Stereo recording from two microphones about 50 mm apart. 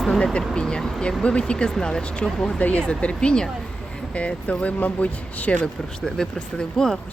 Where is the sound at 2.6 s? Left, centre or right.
Left.